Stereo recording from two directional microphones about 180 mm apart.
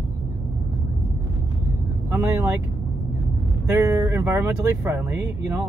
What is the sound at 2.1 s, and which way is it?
Speech, 15° right (ahead or behind).